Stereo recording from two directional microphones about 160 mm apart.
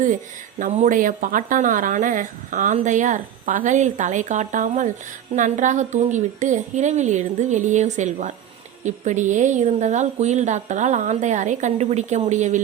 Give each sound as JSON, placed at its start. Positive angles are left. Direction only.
{"t": 0.6, "sound": "speech", "side_deg": -55}